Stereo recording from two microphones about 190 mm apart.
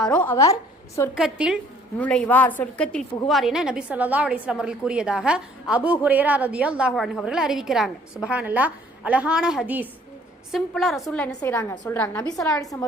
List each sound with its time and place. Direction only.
0.0 s a woman's voice: 5° left (ahead or behind)
1.1 s a woman's voice: 5° right (ahead or behind)
2.0 s a woman's voice: 5° left (ahead or behind)
11.3 s a woman's voice: 15° left (ahead or behind)